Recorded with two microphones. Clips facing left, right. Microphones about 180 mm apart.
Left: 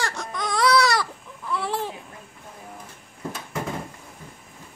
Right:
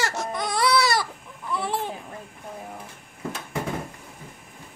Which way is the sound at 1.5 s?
Centre (ahead or behind).